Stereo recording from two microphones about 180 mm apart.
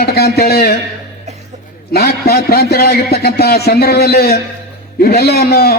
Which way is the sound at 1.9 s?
60° left (ahead or behind).